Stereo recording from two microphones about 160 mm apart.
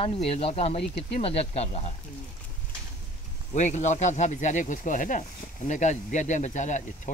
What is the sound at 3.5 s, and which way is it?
Speech, 50° left (ahead or behind).